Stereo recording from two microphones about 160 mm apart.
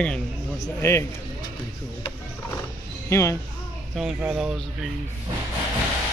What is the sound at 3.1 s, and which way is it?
Speech, 15° left (ahead or behind).